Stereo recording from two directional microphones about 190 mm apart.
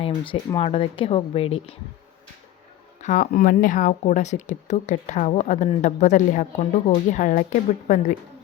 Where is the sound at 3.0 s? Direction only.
45° left (ahead or behind).